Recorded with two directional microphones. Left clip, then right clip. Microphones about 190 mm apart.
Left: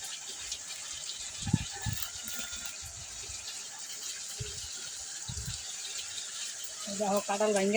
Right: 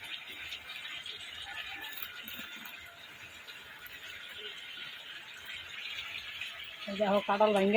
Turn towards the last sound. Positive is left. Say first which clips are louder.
# right 2 dB
turn(degrees=-25)  # may be behind; listen again after turning